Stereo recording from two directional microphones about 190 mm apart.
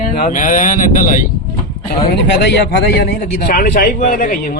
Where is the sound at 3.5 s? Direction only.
50° left (ahead or behind).